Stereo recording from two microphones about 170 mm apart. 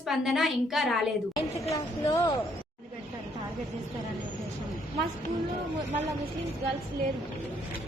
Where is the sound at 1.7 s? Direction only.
15° left (ahead or behind).